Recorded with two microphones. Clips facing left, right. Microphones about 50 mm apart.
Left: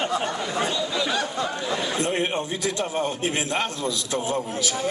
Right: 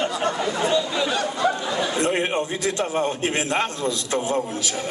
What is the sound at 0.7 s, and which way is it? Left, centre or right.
A man's voice, right.